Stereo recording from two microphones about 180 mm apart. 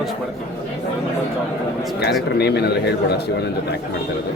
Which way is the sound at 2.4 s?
65° left (ahead or behind).